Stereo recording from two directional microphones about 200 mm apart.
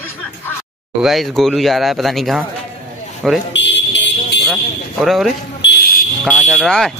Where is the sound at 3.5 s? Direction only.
60° left (ahead or behind).